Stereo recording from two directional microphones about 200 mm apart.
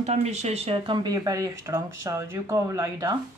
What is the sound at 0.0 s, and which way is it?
Speech, 35° right (ahead or behind).